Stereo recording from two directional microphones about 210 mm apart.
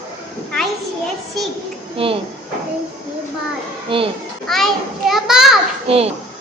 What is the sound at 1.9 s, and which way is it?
Speech, 25° right (ahead or behind).